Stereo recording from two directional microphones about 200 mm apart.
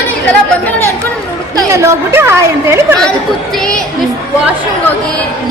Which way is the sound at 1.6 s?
15° right (ahead or behind).